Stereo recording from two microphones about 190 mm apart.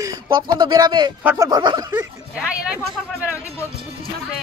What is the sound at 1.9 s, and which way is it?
Speech, 5° right (ahead or behind).